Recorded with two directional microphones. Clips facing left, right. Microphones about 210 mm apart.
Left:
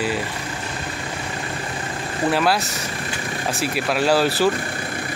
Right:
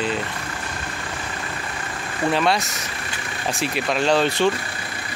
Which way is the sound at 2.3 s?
Centre (ahead or behind).